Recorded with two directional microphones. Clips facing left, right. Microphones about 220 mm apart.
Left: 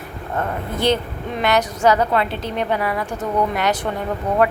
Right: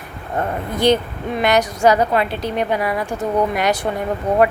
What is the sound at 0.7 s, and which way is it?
A woman's voice, 15° right (ahead or behind).